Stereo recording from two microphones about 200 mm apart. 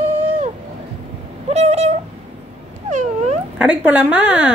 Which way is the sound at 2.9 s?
35° right (ahead or behind).